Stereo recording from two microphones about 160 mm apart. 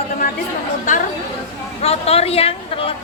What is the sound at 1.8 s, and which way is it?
A woman's voice, 40° left (ahead or behind).